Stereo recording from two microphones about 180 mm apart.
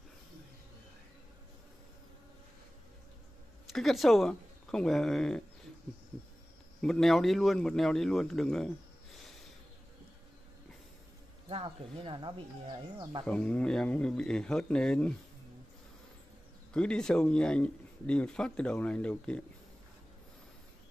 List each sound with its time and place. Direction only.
3.7 s speech: centre (ahead or behind)
6.8 s speech: centre (ahead or behind)
11.4 s speech: 30° right (ahead or behind)
13.2 s speech: 5° left (ahead or behind)
16.7 s speech: 5° left (ahead or behind)